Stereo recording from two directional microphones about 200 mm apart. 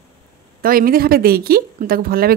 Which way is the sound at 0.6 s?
45° right (ahead or behind).